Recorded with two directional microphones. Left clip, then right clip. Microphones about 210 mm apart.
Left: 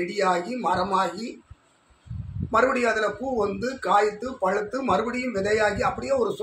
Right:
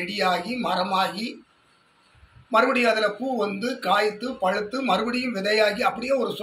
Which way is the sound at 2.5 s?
15° left (ahead or behind).